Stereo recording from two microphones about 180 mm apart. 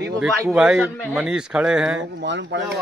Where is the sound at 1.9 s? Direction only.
80° right.